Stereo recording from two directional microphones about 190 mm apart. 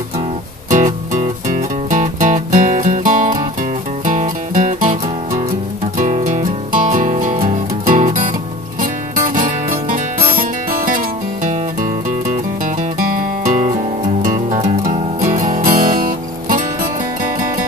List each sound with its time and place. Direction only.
0.7 s music: 40° right (ahead or behind)
5.9 s music: 40° right (ahead or behind)